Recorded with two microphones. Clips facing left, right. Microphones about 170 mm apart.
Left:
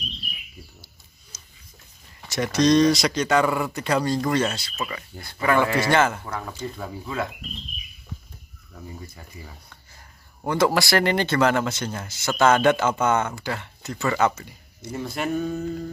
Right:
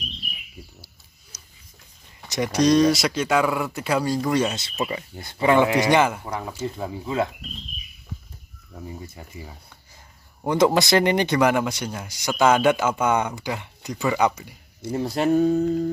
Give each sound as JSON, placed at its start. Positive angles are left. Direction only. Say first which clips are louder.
{"t": 1.3, "sound": "a sound", "louder": "even", "side_deg": -15}
{"t": 2.2, "sound": "speech", "louder": "even", "side_deg": -15}
{"t": 4.6, "sound": "speech", "louder": "right 4 dB", "side_deg": -25}
{"t": 8.8, "sound": "speech", "louder": "right 3 dB", "side_deg": -25}
{"t": 14.8, "sound": "speech", "louder": "right 5 dB", "side_deg": -30}